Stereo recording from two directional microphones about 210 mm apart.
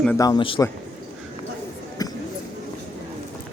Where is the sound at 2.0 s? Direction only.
15° left (ahead or behind).